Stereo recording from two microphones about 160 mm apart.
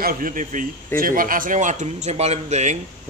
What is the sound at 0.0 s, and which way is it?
A man's voice, 60° right (ahead or behind).